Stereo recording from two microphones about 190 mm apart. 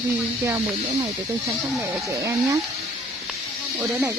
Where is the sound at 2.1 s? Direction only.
15° right (ahead or behind).